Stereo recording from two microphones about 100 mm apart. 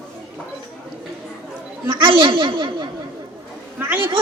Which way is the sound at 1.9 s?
55° right (ahead or behind).